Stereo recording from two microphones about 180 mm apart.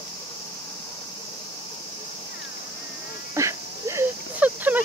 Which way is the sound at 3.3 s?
15° right (ahead or behind).